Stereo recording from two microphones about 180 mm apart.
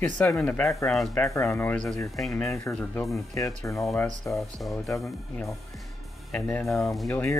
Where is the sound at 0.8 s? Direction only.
5° left (ahead or behind).